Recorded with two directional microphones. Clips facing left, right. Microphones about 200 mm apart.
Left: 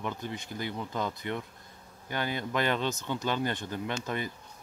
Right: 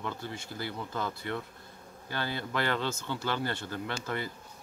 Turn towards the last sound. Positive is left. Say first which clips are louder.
# left 2 dB
turn(degrees=20)  # may be behind; listen again after turning